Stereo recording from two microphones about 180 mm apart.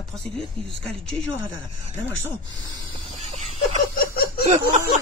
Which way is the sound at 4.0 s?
55° left (ahead or behind).